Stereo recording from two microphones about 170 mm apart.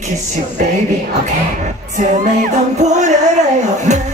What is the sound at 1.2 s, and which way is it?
Music, 45° right (ahead or behind).